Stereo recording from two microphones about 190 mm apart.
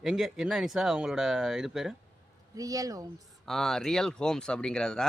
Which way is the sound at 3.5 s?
Centre (ahead or behind).